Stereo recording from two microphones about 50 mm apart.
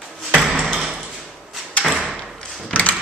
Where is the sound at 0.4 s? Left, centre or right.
Centre.